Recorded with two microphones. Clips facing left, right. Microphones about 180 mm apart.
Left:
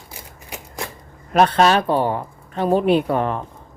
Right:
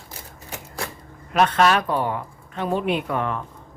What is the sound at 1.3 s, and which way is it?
A man's voice, 35° left (ahead or behind).